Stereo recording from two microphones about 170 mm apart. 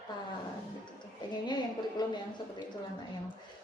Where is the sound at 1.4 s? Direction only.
25° left (ahead or behind).